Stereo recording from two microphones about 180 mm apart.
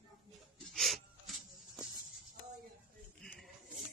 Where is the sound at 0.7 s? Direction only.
Centre (ahead or behind).